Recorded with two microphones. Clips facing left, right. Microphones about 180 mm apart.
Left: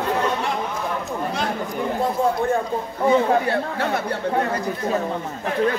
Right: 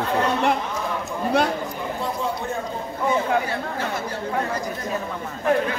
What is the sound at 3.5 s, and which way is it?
Speech, 60° left (ahead or behind).